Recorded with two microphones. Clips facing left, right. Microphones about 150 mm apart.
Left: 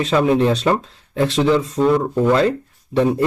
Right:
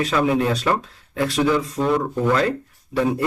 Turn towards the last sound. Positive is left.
turn(degrees=25)  # may be behind; listen again after turning